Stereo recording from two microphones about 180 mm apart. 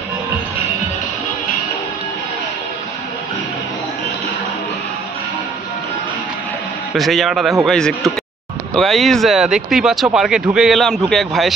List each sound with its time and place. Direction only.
6.9 s speech: centre (ahead or behind)